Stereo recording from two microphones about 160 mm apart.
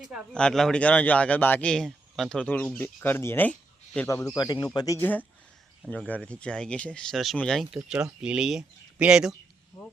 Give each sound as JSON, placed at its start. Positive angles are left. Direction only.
{"t": 0.3, "sound": "speech", "side_deg": 5}
{"t": 4.0, "sound": "speech", "side_deg": 20}
{"t": 4.9, "sound": "speech", "side_deg": 10}